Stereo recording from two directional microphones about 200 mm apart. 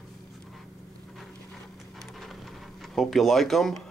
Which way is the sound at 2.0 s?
Centre (ahead or behind).